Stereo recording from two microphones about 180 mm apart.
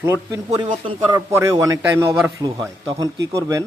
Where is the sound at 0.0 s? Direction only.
15° right (ahead or behind).